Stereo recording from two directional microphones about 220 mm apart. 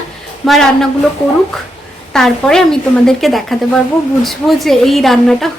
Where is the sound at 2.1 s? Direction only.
Centre (ahead or behind).